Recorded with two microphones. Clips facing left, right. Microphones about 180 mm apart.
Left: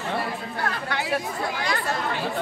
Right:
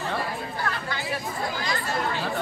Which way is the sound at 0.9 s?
65° left (ahead or behind).